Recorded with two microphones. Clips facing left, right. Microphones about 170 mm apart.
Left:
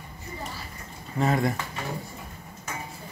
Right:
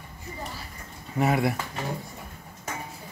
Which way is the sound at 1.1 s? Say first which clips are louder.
Right 1 dB; 15° right (ahead or behind).